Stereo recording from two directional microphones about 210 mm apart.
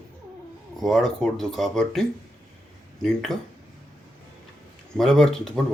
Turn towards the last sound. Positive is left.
turn(degrees=0)  # may be behind; listen again after turning